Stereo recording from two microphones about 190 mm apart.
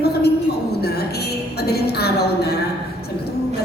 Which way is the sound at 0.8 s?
55° left (ahead or behind).